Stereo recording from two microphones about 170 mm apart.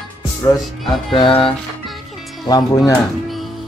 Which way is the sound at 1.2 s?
30° left (ahead or behind).